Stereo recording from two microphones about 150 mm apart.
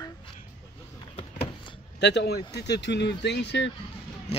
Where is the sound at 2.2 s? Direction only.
90° left.